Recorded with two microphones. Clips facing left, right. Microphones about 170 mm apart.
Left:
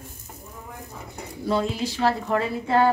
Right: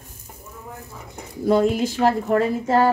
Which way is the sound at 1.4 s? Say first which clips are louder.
Right 7 dB; 50° right (ahead or behind).